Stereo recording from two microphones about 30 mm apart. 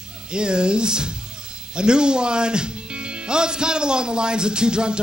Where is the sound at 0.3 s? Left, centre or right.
Right.